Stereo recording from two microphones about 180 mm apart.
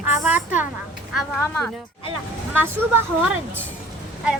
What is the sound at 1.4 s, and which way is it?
Speech, 10° left (ahead or behind).